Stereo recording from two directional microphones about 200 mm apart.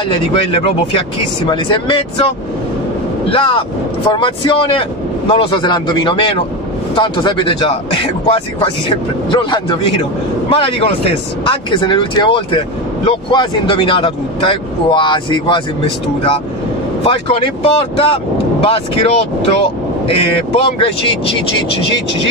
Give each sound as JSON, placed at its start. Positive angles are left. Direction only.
{"t": 0.1, "sound": "speech", "side_deg": 25}
{"t": 3.3, "sound": "speech", "side_deg": 25}